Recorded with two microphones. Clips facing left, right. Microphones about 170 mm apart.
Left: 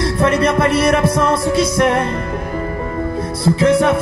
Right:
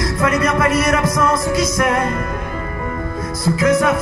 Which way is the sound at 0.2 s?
30° left (ahead or behind).